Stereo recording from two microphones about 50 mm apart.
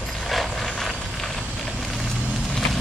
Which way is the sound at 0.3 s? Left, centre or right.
Centre.